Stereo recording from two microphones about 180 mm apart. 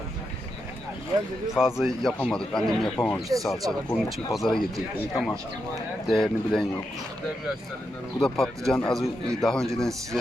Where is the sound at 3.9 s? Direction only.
Centre (ahead or behind).